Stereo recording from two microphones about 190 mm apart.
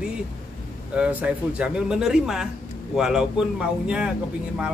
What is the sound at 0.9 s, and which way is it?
A man's voice, 5° right (ahead or behind).